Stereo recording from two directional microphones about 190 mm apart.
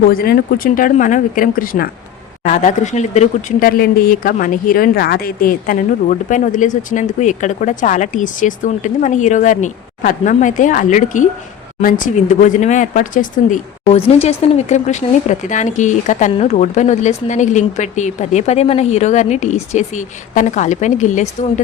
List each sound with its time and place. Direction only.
0.0 s speech: 50° left (ahead or behind)
3.7 s speech: 50° left (ahead or behind)